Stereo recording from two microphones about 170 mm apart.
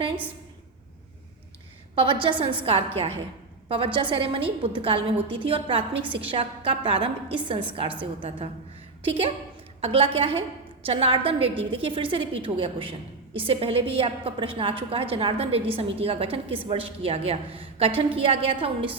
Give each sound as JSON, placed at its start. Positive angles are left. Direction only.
{"t": 2.2, "sound": "a woman's voice", "side_deg": -30}
{"t": 9.0, "sound": "a woman's voice", "side_deg": -35}